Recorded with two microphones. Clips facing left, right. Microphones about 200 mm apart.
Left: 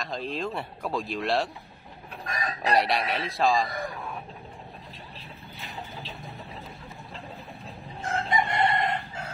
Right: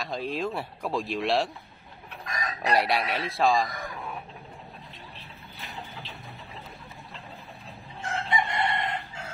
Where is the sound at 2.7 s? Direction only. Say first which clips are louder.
Even; centre (ahead or behind).